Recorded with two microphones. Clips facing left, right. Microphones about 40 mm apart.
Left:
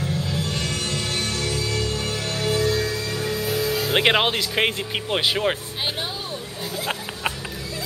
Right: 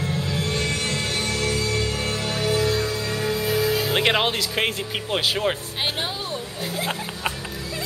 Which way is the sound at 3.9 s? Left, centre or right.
Centre.